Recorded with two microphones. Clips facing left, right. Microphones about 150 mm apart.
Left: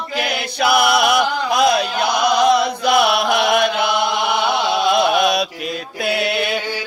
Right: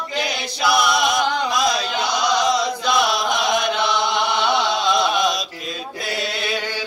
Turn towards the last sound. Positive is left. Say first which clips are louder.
# left 6 dB
turn(degrees=60)  # may be behind; listen again after turning